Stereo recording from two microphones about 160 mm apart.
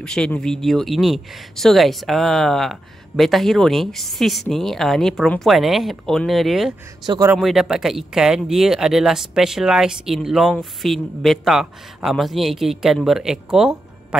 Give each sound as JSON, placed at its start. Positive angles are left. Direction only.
{"t": 0.0, "sound": "speech", "side_deg": 5}
{"t": 7.1, "sound": "a man's voice", "side_deg": -20}
{"t": 7.3, "sound": "speech", "side_deg": 0}